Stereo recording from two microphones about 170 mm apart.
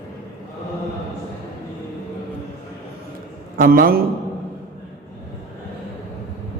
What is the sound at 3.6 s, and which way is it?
Speech, 55° right (ahead or behind).